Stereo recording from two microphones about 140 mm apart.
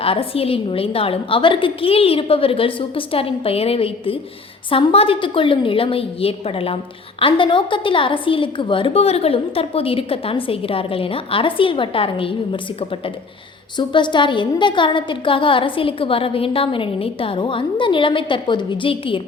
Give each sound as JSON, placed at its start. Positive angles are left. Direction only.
{"t": 0.0, "sound": "a woman's voice", "side_deg": 45}
{"t": 13.7, "sound": "a woman's voice", "side_deg": 35}